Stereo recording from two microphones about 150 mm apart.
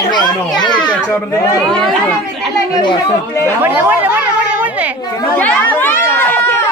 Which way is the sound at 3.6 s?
10° right (ahead or behind).